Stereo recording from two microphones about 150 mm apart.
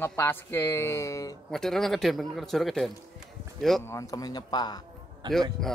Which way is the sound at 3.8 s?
20° left (ahead or behind).